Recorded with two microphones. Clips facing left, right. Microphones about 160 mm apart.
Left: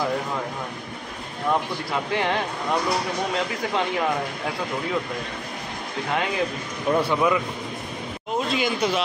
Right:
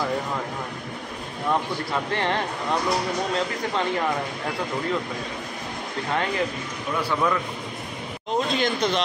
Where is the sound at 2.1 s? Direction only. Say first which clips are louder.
Left 2 dB; 10° left (ahead or behind).